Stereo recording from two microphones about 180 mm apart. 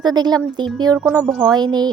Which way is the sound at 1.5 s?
25° right (ahead or behind).